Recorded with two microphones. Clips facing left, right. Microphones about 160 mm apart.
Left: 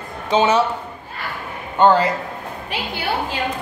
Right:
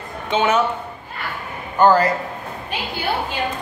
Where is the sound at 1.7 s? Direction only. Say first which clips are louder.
Even; 20° left (ahead or behind).